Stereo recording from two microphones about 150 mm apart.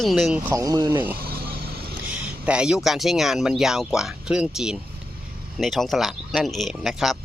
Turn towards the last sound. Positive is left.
turn(degrees=0)  # may be behind; listen again after turning